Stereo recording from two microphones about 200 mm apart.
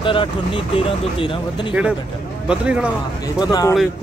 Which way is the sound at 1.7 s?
5° right (ahead or behind).